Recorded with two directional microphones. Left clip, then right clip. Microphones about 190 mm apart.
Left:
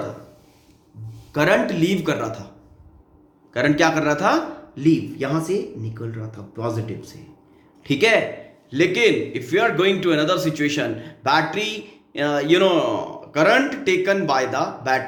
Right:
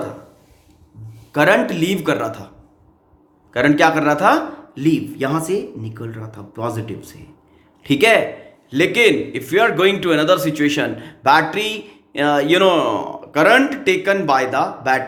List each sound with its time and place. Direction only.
1.3 s speech: 30° right (ahead or behind)
3.5 s a man's voice: 30° right (ahead or behind)